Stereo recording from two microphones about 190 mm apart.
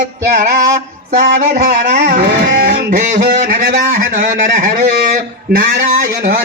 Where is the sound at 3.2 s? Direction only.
55° right (ahead or behind).